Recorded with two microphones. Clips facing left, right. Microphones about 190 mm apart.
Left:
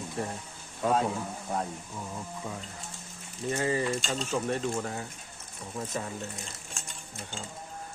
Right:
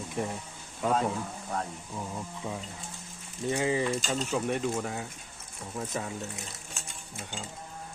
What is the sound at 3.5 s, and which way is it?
Speech, 15° right (ahead or behind).